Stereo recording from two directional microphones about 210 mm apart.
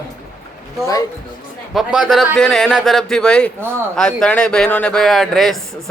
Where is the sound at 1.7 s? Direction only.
Centre (ahead or behind).